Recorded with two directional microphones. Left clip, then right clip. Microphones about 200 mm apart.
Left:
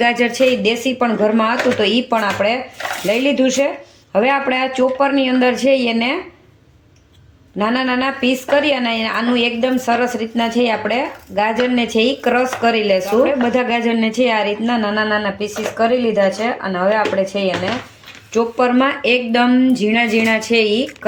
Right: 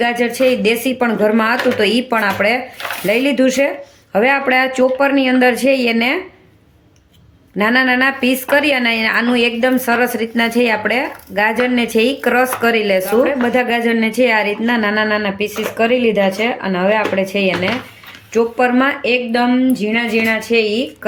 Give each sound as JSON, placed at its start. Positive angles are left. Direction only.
{"t": 0.0, "sound": "a woman's voice", "side_deg": 0}
{"t": 7.6, "sound": "a woman's voice", "side_deg": -10}
{"t": 18.3, "sound": "speech", "side_deg": -5}